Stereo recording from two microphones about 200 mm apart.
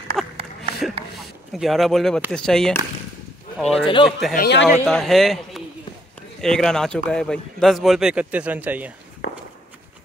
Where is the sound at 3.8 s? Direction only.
25° left (ahead or behind).